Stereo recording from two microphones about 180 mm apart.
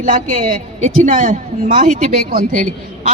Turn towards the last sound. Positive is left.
turn(degrees=-40)  # may be behind; listen again after turning